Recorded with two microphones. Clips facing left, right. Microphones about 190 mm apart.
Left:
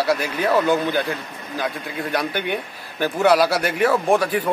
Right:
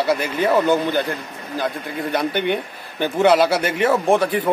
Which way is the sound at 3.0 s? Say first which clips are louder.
Right 1 dB; 5° left (ahead or behind).